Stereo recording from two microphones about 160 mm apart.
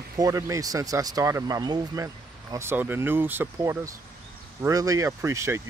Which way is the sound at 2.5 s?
15° right (ahead or behind).